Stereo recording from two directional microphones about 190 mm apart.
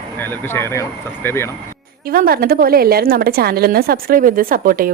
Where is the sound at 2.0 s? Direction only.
50° right (ahead or behind).